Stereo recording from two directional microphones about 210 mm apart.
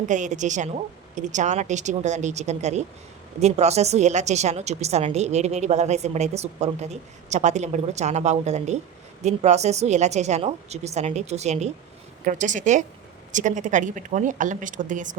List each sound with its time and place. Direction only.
0.1 s a woman's voice: 35° right (ahead or behind)